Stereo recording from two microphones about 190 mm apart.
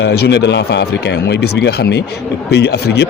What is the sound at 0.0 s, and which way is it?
Speech, 60° left (ahead or behind).